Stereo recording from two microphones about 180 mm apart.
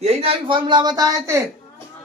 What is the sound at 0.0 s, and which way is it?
Speech, 35° right (ahead or behind).